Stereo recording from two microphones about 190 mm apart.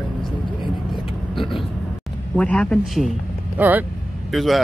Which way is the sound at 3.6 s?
10° right (ahead or behind).